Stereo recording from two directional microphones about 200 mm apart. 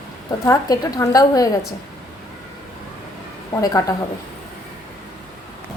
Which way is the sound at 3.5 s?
15° left (ahead or behind).